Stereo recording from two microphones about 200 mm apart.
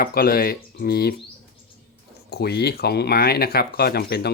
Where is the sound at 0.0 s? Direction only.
50° left (ahead or behind).